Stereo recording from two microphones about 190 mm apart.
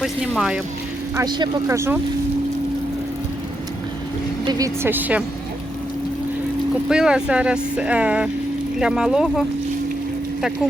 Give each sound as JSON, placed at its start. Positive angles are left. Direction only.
{"t": 0.0, "sound": "speech", "side_deg": 0}
{"t": 1.1, "sound": "speech", "side_deg": -20}
{"t": 4.4, "sound": "speech", "side_deg": -20}
{"t": 6.8, "sound": "speech", "side_deg": -5}